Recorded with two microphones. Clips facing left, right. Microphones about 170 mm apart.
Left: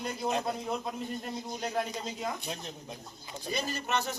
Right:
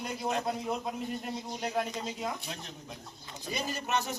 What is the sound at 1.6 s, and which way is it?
Speech, 5° right (ahead or behind).